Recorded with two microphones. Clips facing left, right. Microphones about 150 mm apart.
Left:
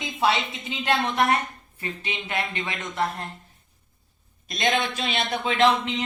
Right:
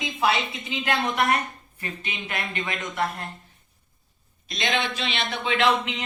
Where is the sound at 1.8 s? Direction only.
25° left (ahead or behind).